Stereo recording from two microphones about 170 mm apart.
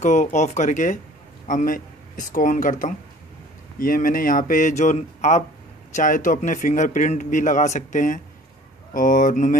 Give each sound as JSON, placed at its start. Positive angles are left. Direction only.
{"t": 0.0, "sound": "a man's voice", "side_deg": 45}